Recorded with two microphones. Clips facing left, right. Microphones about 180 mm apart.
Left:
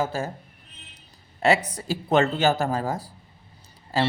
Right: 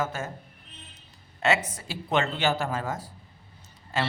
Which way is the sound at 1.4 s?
35° left (ahead or behind).